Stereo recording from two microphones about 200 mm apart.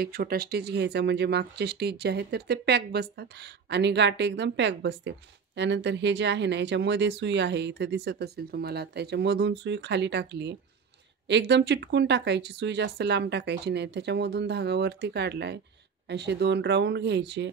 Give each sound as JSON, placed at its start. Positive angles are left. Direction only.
{"t": 0.0, "sound": "speech", "side_deg": -50}